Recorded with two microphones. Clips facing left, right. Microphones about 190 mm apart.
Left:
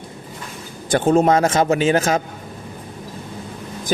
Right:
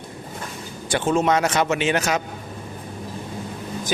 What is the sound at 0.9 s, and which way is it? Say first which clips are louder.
A man's voice: left 5 dB; 40° left (ahead or behind).